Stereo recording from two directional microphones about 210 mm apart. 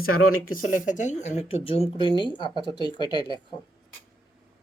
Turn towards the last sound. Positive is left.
turn(degrees=20)  # may be behind; listen again after turning